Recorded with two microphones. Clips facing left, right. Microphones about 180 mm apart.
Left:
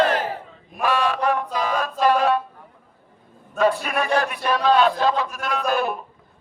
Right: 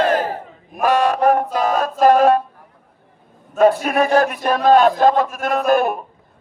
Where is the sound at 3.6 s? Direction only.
45° right (ahead or behind).